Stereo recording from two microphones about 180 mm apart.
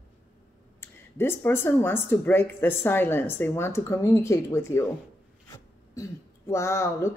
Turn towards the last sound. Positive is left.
turn(degrees=15)  # may be behind; listen again after turning